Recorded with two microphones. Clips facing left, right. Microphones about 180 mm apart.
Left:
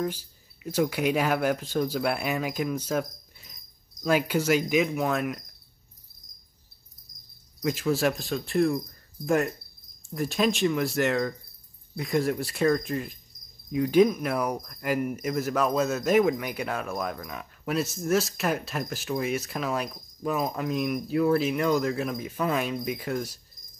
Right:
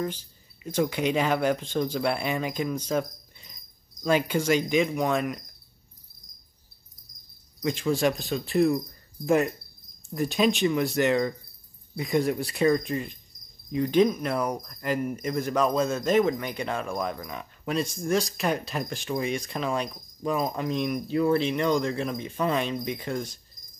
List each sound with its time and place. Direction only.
0.0 s speech: 10° left (ahead or behind)
4.0 s cricket: 5° left (ahead or behind)
7.6 s cricket: 5° left (ahead or behind)